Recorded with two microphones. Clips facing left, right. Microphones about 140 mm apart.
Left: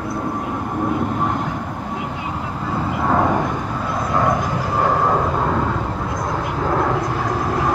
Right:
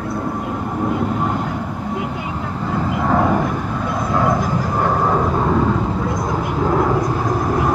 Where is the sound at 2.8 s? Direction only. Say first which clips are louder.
Right 1 dB; 5° left (ahead or behind).